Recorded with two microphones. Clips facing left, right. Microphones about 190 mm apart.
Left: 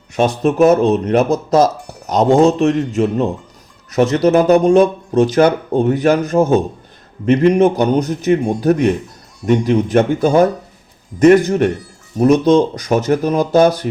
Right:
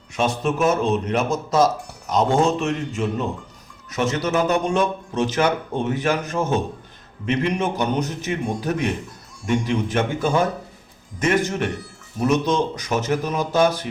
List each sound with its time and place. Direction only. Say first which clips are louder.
0.2 s speech: left 8 dB; 40° left (ahead or behind)